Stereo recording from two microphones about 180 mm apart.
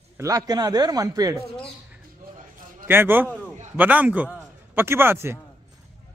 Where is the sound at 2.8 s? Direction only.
10° right (ahead or behind).